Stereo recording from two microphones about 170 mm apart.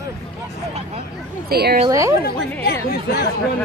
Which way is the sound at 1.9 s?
20° right (ahead or behind).